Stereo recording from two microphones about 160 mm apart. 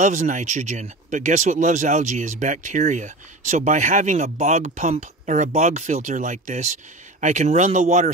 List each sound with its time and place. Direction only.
0.0 s speech: 50° right (ahead or behind)